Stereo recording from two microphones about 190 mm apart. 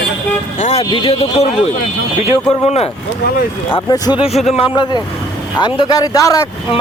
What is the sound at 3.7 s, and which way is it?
Speech, 20° left (ahead or behind).